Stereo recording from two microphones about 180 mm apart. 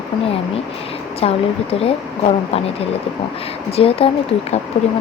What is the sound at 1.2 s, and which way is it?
Speech, 35° left (ahead or behind).